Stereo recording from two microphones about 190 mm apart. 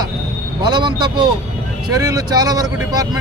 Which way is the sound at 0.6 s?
25° right (ahead or behind).